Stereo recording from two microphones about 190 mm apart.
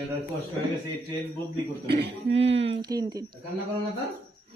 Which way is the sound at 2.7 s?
20° right (ahead or behind).